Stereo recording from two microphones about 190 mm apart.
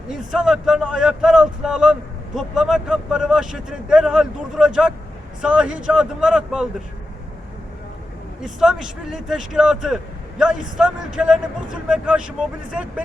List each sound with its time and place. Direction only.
0.1 s speech: 5° right (ahead or behind)
8.4 s speech: centre (ahead or behind)